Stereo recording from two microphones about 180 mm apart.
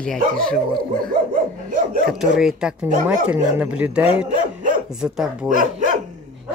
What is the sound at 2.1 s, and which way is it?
Speech, centre (ahead or behind).